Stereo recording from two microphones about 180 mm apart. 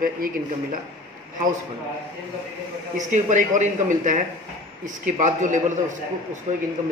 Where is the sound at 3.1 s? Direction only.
45° right (ahead or behind).